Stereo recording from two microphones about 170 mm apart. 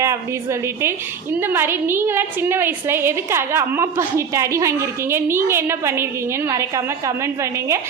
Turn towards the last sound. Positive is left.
turn(degrees=-15)  # may be behind; listen again after turning